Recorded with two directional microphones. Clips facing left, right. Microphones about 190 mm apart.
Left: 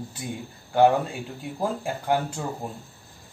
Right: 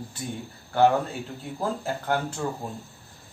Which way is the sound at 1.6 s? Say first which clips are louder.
Left 1 dB; 15° left (ahead or behind).